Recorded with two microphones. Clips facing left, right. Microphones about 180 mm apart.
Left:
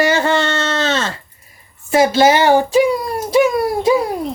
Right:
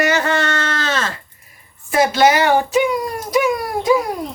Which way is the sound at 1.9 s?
25° left (ahead or behind).